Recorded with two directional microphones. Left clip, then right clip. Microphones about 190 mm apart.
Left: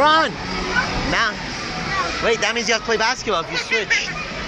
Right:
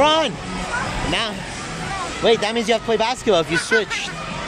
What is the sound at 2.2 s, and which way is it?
Speech, 25° right (ahead or behind).